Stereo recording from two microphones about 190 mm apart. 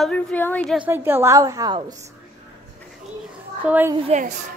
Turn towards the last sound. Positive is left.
turn(degrees=-35)  # may be behind; listen again after turning